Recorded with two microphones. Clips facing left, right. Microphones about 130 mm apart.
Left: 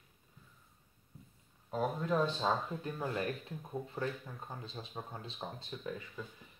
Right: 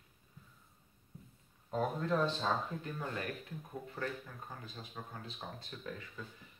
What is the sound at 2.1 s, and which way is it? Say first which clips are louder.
Speech: left 1 dB; 15° left (ahead or behind).